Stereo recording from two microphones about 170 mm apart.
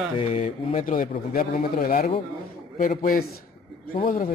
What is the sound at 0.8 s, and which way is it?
A man's voice, 55° left (ahead or behind).